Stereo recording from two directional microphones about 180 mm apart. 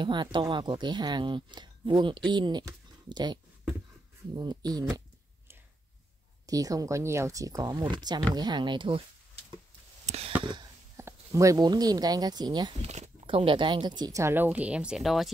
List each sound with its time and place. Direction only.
0.0 s speech: 25° right (ahead or behind)
4.4 s speech: 20° right (ahead or behind)
6.4 s speech: 20° right (ahead or behind)
10.0 s a sound: 35° right (ahead or behind)
10.4 s speech: 25° right (ahead or behind)
12.8 s speech: 40° right (ahead or behind); by 15.3 s centre (ahead or behind)